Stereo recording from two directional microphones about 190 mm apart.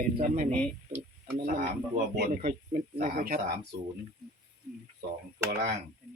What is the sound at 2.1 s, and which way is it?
Speech, 55° right (ahead or behind).